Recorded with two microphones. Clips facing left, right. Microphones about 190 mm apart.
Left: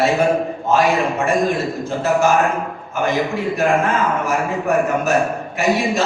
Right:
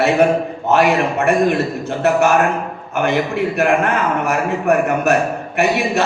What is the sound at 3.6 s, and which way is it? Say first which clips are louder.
A man's voice: even; 65° right (ahead or behind).